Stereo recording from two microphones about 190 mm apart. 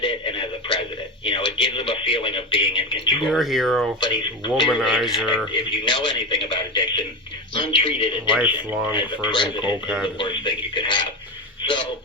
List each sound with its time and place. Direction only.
0.0 s radio: 25° left (ahead or behind)
1.2 s speech: 25° left (ahead or behind)
3.2 s speech: centre (ahead or behind)
4.0 s speech: 25° left (ahead or behind)
4.7 s speech: centre (ahead or behind)
5.7 s a man's voice: 25° left (ahead or behind)
8.4 s speech: 5° right (ahead or behind)
9.0 s speech: 25° left (ahead or behind)
9.6 s speech: 5° right (ahead or behind)
10.2 s a sound: 25° left (ahead or behind)